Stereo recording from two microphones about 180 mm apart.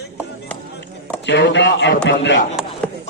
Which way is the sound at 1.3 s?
75° left (ahead or behind).